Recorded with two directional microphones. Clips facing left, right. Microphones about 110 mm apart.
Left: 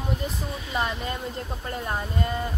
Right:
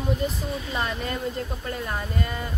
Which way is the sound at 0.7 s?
20° left (ahead or behind).